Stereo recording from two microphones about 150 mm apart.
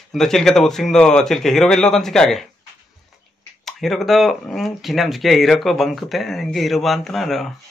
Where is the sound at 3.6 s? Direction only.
Centre (ahead or behind).